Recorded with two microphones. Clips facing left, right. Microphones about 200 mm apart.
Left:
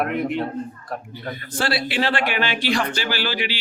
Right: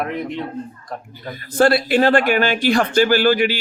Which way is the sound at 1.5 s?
45° right (ahead or behind).